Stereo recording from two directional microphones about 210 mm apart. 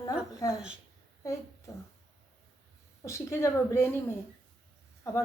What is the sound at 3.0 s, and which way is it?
Speech, 15° left (ahead or behind).